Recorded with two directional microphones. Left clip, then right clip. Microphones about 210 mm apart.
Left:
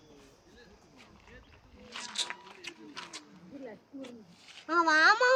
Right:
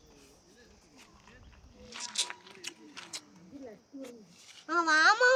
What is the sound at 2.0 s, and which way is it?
Biting, 40° right (ahead or behind).